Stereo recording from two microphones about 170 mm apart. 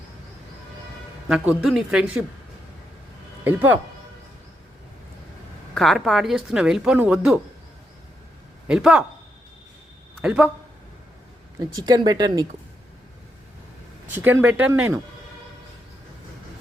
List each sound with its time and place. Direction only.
1.3 s speech: 5° right (ahead or behind)
3.4 s speech: 10° right (ahead or behind)
5.7 s speech: centre (ahead or behind)
8.6 s speech: 5° right (ahead or behind)
10.2 s speech: 5° right (ahead or behind)
11.6 s speech: 25° right (ahead or behind)
14.2 s speech: 10° right (ahead or behind)